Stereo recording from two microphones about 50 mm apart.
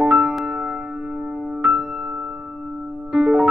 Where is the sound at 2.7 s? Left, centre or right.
Centre.